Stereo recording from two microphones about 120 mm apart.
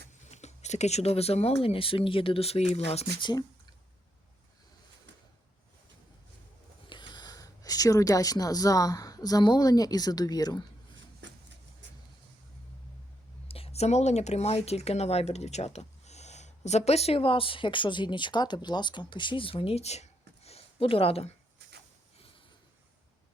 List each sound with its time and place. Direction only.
0.3 s speech: 70° left (ahead or behind)
3.2 s speech: 40° left (ahead or behind)
6.8 s speech: 40° left (ahead or behind)
13.5 s speech: 55° left (ahead or behind)